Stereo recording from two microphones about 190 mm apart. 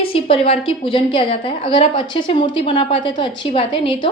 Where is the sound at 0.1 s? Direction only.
30° left (ahead or behind).